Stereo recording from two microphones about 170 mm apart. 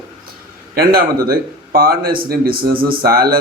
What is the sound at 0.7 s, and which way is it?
Speech, 65° right (ahead or behind).